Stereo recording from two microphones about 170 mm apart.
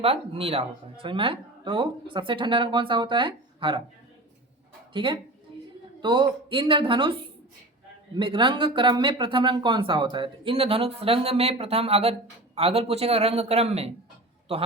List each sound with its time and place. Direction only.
0.0 s speech: 35° right (ahead or behind)
4.9 s speech: 30° right (ahead or behind)